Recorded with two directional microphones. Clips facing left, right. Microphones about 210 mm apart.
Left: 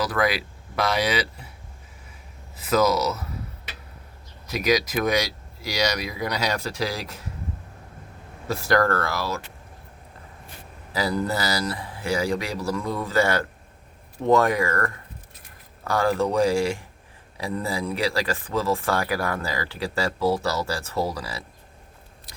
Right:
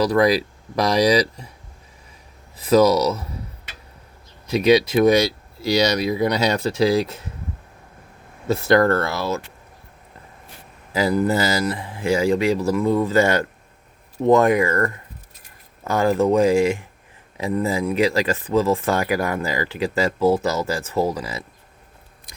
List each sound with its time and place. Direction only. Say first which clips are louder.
0.1 s speech: right 7 dB; 35° right (ahead or behind)
2.6 s speech: right 6 dB; 35° right (ahead or behind)
4.5 s speech: right 7 dB; 30° right (ahead or behind)
8.4 s speech: right 5 dB; 25° right (ahead or behind)
10.9 s speech: right 6 dB; 20° right (ahead or behind)